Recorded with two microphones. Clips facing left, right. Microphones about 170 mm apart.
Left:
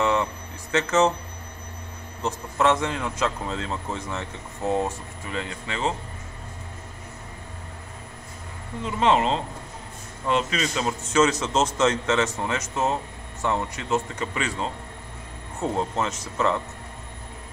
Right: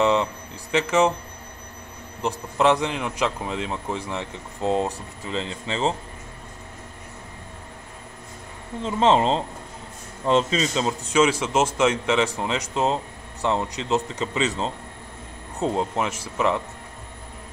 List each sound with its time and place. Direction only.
0.0 s a sound: 20° right (ahead or behind)
2.2 s a man's voice: 15° right (ahead or behind)
8.8 s speech: 30° right (ahead or behind)
11.1 s a man's voice: 10° right (ahead or behind)